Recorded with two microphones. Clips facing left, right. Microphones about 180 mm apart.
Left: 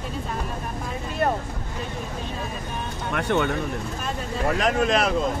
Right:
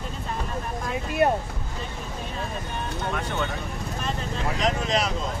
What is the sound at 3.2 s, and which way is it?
Speech, 65° left (ahead or behind).